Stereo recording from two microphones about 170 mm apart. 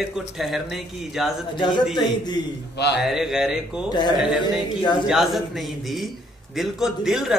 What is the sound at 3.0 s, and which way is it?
A man's voice, 5° right (ahead or behind).